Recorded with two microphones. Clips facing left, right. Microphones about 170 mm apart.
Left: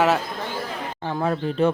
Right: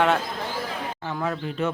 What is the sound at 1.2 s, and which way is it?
Speech, 35° left (ahead or behind).